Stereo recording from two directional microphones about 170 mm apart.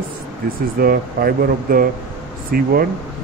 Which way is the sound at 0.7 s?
60° right (ahead or behind).